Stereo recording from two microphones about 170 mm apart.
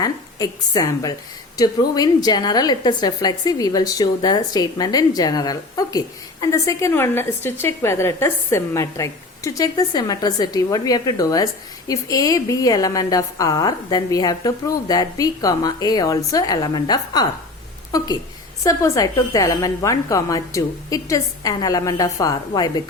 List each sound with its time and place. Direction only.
0.0 s a woman's voice: 20° left (ahead or behind)